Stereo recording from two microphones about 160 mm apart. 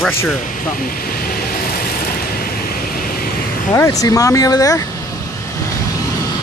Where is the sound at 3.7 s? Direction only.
20° left (ahead or behind).